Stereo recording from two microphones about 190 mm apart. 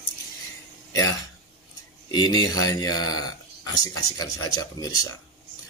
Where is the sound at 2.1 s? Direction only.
20° left (ahead or behind).